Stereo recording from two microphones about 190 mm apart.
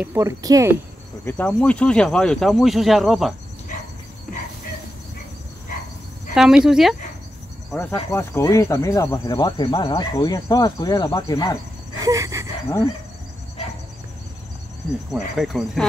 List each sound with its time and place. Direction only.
0.0 s speech: 15° right (ahead or behind)
1.2 s speech: 10° left (ahead or behind)
6.3 s speech: 5° right (ahead or behind)
7.9 s speech: 15° left (ahead or behind)
12.0 s gasp: 15° right (ahead or behind)
15.1 s speech: centre (ahead or behind)